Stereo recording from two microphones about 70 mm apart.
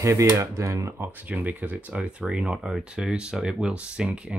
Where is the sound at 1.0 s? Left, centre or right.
Right.